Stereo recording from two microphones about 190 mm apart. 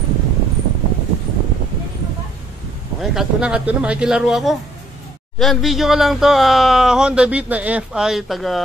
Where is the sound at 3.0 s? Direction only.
Centre (ahead or behind).